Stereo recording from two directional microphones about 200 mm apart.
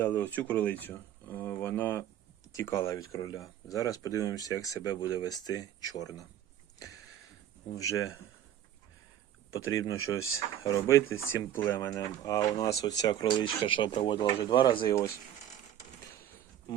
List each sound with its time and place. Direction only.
0.0 s speech: 10° left (ahead or behind)
7.8 s speech: 15° left (ahead or behind)
10.0 s speech: 90° left
10.6 s speech: 15° left (ahead or behind)